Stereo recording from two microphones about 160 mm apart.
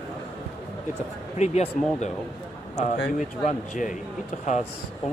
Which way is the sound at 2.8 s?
45° left (ahead or behind).